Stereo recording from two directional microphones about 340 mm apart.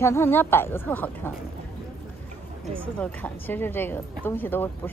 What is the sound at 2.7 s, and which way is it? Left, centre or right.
A woman's voice, centre.